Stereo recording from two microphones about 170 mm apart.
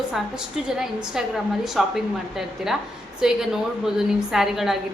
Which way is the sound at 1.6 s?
Centre (ahead or behind).